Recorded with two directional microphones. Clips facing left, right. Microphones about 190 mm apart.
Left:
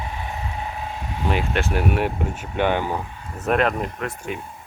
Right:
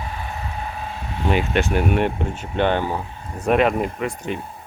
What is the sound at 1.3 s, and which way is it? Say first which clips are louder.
Speech: right 3 dB; centre (ahead or behind).